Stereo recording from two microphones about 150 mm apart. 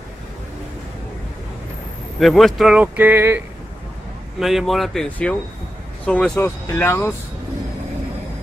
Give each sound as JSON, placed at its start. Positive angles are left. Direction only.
{"t": 2.1, "sound": "speech", "side_deg": 0}
{"t": 4.4, "sound": "speech", "side_deg": 0}